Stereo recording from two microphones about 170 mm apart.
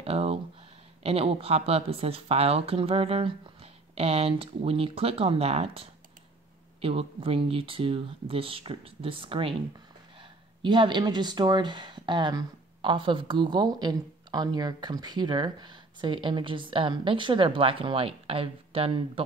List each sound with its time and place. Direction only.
0.0 s a sound: 35° right (ahead or behind)
1.0 s speech: 35° right (ahead or behind)
10.6 s speech: 25° right (ahead or behind)